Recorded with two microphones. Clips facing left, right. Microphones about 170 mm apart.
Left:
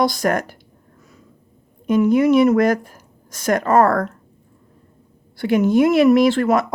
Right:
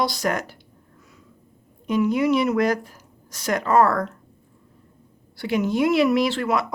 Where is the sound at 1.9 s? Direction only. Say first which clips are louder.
Left 5 dB; 50° left (ahead or behind).